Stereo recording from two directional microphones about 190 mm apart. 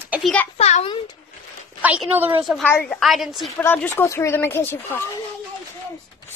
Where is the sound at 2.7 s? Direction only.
10° left (ahead or behind).